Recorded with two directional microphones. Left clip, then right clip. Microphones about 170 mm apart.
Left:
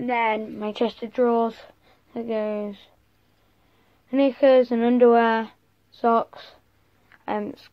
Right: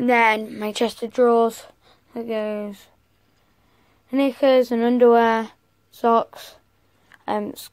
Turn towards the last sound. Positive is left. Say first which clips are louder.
# right 3 dB
turn(degrees=-15)  # may be behind; listen again after turning